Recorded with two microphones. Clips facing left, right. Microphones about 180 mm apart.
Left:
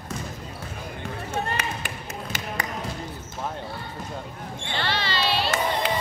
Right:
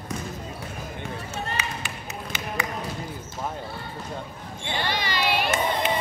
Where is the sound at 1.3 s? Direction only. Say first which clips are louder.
Left 5 dB; 55° left (ahead or behind).